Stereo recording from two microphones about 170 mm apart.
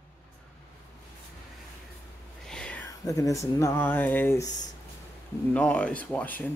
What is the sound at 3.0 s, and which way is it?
Speech, 20° left (ahead or behind).